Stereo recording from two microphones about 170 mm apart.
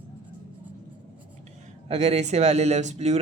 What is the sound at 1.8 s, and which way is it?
A man's voice, 40° right (ahead or behind).